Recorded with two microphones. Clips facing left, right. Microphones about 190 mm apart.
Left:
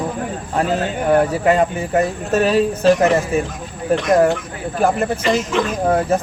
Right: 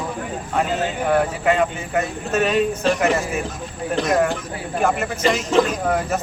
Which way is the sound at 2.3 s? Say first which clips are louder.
Left 2 dB; 35° left (ahead or behind).